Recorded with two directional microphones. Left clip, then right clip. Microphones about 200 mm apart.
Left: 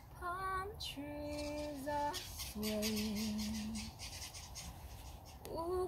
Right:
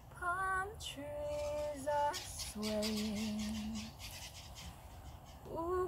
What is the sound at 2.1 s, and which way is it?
Music, 55° right (ahead or behind).